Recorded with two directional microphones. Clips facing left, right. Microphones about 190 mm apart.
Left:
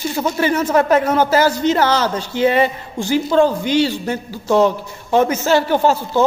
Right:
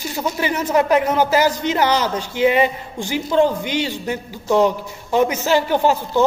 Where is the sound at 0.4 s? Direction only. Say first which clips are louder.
Left 3 dB; 15° right (ahead or behind).